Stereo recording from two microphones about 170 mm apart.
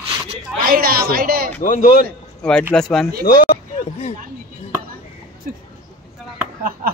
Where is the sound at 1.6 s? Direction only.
50° left (ahead or behind).